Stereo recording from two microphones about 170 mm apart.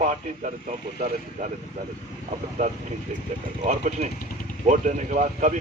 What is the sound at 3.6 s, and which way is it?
Speech, 45° right (ahead or behind).